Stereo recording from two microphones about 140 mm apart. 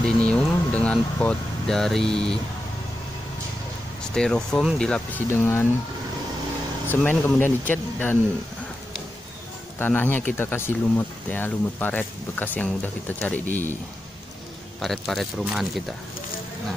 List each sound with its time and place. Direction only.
0.0 s vehicle: 5° left (ahead or behind)
4.1 s speech: 5° left (ahead or behind)
6.9 s speech: 10° left (ahead or behind)
9.8 s speech: 15° left (ahead or behind)
14.8 s speech: centre (ahead or behind)